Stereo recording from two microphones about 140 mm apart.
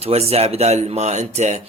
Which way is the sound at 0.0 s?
45° right (ahead or behind).